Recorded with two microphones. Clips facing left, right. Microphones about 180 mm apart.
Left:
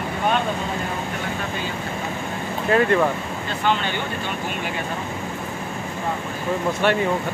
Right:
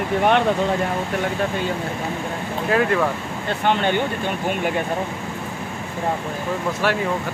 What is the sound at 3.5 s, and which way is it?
Speech, 55° right (ahead or behind).